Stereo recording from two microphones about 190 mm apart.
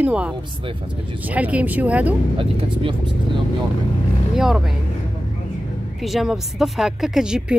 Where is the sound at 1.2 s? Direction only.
10° right (ahead or behind).